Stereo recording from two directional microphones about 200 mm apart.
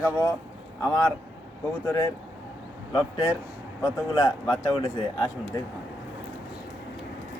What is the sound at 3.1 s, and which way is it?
Speech, 25° left (ahead or behind).